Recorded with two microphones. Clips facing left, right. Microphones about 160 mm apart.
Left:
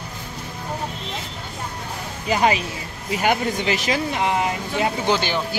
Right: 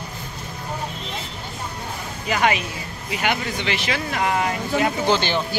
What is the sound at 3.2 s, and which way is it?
Speech, 40° left (ahead or behind).